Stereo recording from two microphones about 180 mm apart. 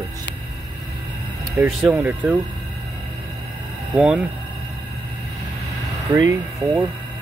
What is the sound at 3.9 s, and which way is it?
Speech, 5° right (ahead or behind).